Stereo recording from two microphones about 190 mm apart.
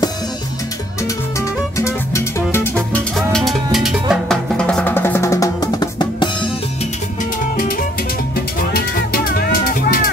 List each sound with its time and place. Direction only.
1.8 s music: 15° left (ahead or behind)
8.4 s music: 50° left (ahead or behind)